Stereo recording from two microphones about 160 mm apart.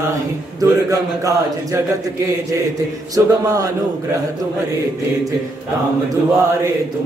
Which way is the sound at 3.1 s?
20° right (ahead or behind).